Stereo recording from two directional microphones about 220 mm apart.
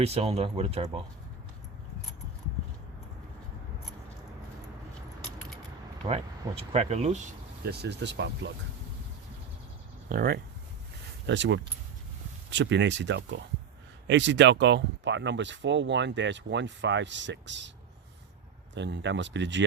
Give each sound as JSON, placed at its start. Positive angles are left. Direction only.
{"t": 0.0, "sound": "speech", "side_deg": -30}
{"t": 6.1, "sound": "speech", "side_deg": -30}
{"t": 7.6, "sound": "speech", "side_deg": -50}
{"t": 10.1, "sound": "speech", "side_deg": -45}
{"t": 11.3, "sound": "speech", "side_deg": -55}
{"t": 18.7, "sound": "speech", "side_deg": -55}